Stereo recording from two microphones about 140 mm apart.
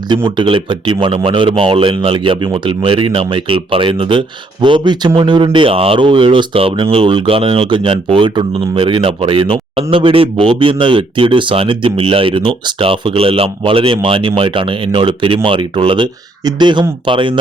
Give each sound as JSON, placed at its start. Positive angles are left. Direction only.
{"t": 0.3, "sound": "speech", "side_deg": -35}